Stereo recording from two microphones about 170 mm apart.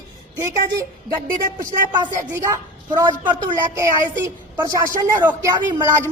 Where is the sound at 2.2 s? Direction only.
15° right (ahead or behind).